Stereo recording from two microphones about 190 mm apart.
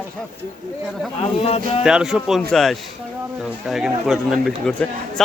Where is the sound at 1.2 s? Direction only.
35° left (ahead or behind).